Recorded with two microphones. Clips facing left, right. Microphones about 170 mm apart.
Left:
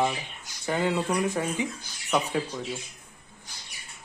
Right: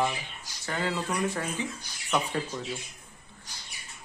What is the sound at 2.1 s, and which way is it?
Speech, 5° left (ahead or behind).